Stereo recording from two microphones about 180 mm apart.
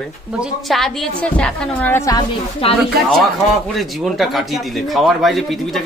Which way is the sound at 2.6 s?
30° left (ahead or behind).